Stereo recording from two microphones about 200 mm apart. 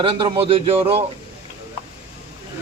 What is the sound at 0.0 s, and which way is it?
Speech, 25° right (ahead or behind).